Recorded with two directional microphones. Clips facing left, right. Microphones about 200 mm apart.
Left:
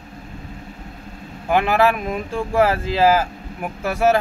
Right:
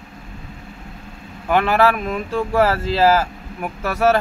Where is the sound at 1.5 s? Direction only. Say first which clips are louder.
Right 1 dB; 15° left (ahead or behind).